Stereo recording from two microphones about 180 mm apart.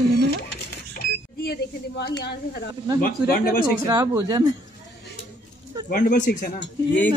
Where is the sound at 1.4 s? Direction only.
65° left (ahead or behind).